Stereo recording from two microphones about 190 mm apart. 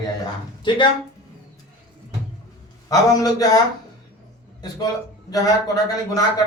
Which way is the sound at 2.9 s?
20° left (ahead or behind).